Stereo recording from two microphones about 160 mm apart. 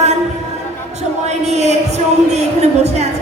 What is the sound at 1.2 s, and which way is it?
A woman's voice, 45° right (ahead or behind).